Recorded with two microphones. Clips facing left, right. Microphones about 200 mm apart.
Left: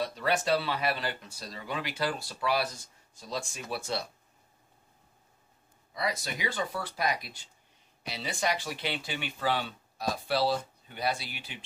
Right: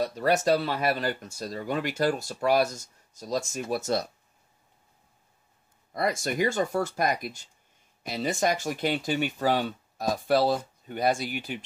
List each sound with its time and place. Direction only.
0.0 s speech: 45° right (ahead or behind)
5.9 s speech: 50° right (ahead or behind)